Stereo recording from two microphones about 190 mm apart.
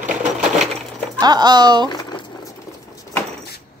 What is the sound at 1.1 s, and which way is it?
Speech, 20° right (ahead or behind).